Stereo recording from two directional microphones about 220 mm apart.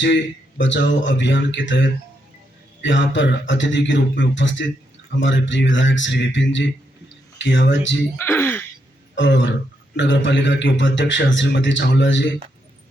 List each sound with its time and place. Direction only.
0.6 s a man's voice: 55° left (ahead or behind)
8.2 s speech: 10° left (ahead or behind)
9.1 s a man's voice: 55° left (ahead or behind)